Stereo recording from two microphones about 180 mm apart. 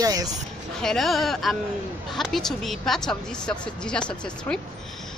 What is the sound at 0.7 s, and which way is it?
Speech, centre (ahead or behind).